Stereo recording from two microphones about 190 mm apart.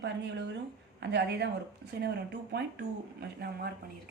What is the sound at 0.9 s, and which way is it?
A woman's voice, 65° right (ahead or behind).